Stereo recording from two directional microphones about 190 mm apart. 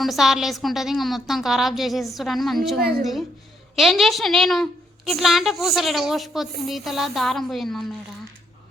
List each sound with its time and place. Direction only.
0.0 s a woman's voice: centre (ahead or behind)